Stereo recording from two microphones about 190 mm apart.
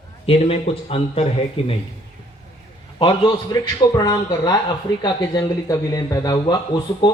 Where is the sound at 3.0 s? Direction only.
25° left (ahead or behind).